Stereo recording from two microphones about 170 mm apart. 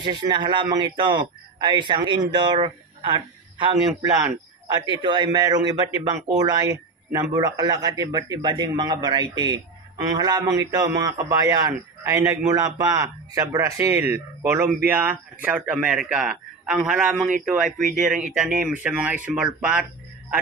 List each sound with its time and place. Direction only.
0.0 s a man's voice: 25° right (ahead or behind)
5.0 s a man's voice: 25° right (ahead or behind); by 17.6 s 5° right (ahead or behind)
17.8 s speech: 50° right (ahead or behind)
18.1 s a man's voice: 5° right (ahead or behind)